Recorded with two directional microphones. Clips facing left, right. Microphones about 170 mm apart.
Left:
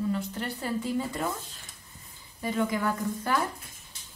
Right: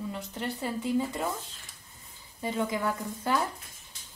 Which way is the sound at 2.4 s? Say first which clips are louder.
Left 2 dB; 25° right (ahead or behind).